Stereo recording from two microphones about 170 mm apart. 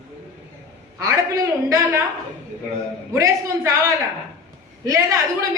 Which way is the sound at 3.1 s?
20° right (ahead or behind).